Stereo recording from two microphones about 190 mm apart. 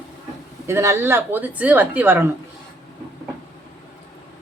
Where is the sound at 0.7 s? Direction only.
15° right (ahead or behind).